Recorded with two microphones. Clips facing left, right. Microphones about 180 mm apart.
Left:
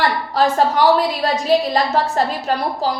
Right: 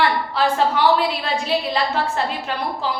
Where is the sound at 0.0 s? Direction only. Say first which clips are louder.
Left 2 dB; 40° left (ahead or behind).